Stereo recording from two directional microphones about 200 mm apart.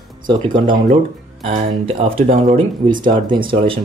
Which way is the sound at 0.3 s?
25° right (ahead or behind).